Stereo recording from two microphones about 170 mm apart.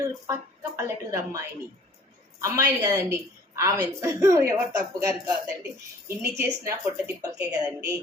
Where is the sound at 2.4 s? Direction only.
20° right (ahead or behind).